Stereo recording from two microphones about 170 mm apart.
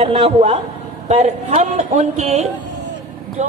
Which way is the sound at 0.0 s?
40° right (ahead or behind).